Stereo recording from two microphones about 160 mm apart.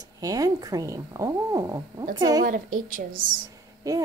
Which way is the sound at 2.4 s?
60° right (ahead or behind).